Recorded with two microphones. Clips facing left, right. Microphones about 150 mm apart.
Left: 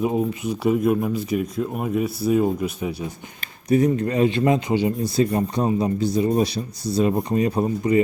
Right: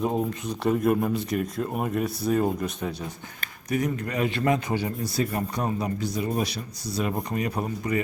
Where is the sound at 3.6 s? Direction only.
30° left (ahead or behind).